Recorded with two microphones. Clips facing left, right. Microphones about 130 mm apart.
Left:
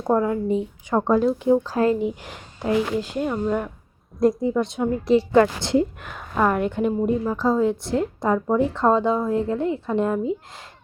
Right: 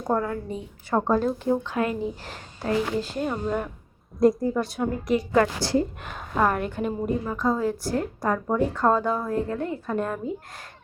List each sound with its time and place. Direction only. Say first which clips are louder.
0.0 s a woman's voice: left 5 dB; 20° left (ahead or behind)
1.6 s speech: left 6 dB; 35° left (ahead or behind)
2.0 s a woman's voice: left 4 dB; 15° left (ahead or behind); by 4.6 s centre (ahead or behind)
4.6 s a woman's voice: left 4 dB; 20° left (ahead or behind)
6.0 s a woman's voice: left 2 dB; 5° right (ahead or behind)
6.5 s a woman's voice: left 5 dB; 20° left (ahead or behind)